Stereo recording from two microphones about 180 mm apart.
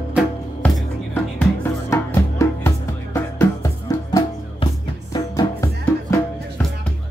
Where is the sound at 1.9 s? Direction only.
15° left (ahead or behind).